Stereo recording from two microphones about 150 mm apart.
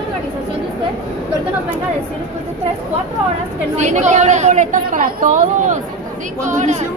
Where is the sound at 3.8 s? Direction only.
50° right (ahead or behind).